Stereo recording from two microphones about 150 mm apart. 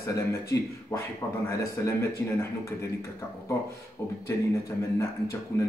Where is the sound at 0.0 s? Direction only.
20° left (ahead or behind).